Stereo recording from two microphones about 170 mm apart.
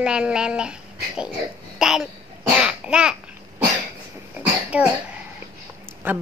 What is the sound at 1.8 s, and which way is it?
Babbling, centre (ahead or behind).